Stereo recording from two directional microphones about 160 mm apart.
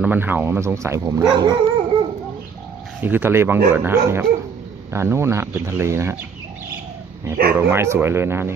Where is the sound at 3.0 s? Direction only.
10° right (ahead or behind).